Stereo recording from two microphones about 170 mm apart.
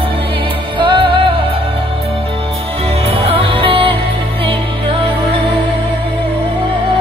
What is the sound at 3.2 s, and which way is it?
Music, 30° right (ahead or behind).